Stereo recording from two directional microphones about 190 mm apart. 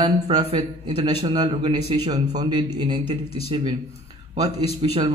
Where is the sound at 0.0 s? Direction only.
30° right (ahead or behind).